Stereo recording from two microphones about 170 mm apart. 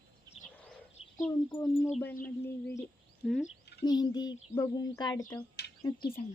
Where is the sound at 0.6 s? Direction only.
5° left (ahead or behind).